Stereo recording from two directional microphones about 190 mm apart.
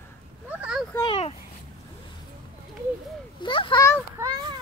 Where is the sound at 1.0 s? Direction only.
30° left (ahead or behind).